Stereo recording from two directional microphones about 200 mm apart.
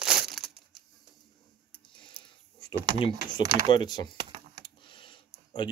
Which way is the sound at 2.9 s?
25° left (ahead or behind).